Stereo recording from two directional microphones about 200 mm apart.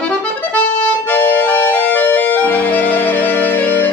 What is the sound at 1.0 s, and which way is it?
Organ, 10° left (ahead or behind).